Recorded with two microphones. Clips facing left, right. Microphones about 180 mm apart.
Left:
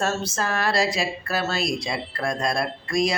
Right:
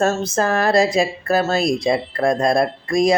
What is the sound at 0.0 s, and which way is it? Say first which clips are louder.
Speech: right 7 dB; 50° right (ahead or behind).